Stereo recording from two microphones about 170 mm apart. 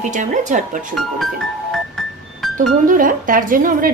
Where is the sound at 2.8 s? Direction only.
50° right (ahead or behind).